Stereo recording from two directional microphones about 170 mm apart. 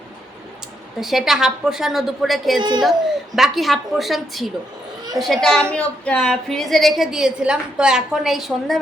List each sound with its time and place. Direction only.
0.9 s a woman's voice: centre (ahead or behind)
2.6 s a child's voice: 25° right (ahead or behind)
3.3 s a woman's voice: centre (ahead or behind)